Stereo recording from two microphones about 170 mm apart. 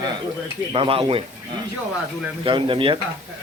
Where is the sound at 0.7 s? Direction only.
30° right (ahead or behind).